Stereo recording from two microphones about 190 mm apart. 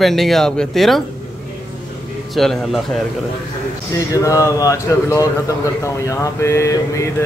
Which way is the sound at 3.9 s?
15° left (ahead or behind).